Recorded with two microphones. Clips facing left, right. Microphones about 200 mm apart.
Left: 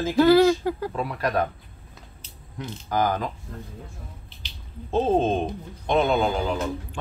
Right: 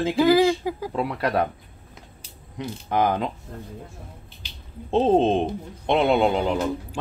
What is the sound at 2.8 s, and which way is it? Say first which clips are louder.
Speech: right 2 dB; 25° right (ahead or behind).